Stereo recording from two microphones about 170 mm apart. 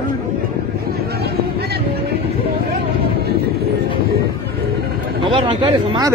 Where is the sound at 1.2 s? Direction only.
70° right (ahead or behind).